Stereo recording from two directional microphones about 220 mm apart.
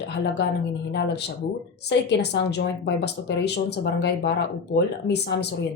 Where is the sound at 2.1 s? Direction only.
50° left (ahead or behind).